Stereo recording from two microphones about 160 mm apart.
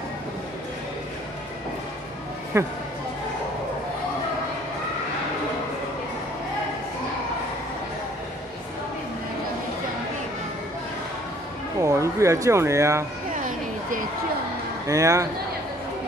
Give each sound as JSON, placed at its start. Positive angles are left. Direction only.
{"t": 2.5, "sound": "speech", "side_deg": -15}
{"t": 11.8, "sound": "speech", "side_deg": -20}
{"t": 13.3, "sound": "a sound", "side_deg": -55}
{"t": 14.9, "sound": "speech", "side_deg": -20}